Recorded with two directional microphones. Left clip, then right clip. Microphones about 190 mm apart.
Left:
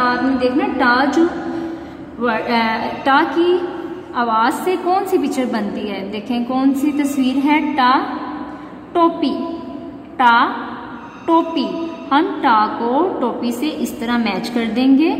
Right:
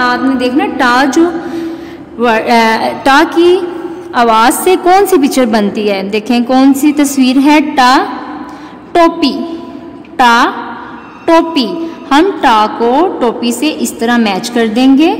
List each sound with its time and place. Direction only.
0.0 s a woman's voice: 60° right (ahead or behind)
2.2 s a woman's voice: 55° right (ahead or behind)
10.1 s a woman's voice: 45° right (ahead or behind)